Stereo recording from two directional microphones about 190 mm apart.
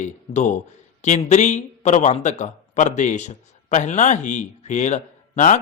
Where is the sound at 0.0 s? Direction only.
40° left (ahead or behind).